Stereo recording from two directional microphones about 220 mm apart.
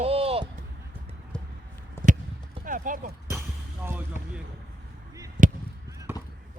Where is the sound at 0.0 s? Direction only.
25° right (ahead or behind).